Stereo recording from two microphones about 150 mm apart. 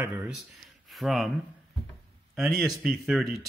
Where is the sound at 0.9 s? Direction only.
Centre (ahead or behind).